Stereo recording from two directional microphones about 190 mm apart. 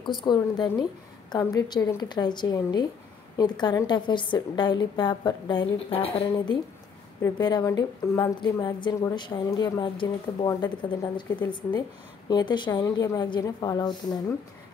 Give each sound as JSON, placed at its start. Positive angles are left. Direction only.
{"t": 0.2, "sound": "a woman's voice", "side_deg": 25}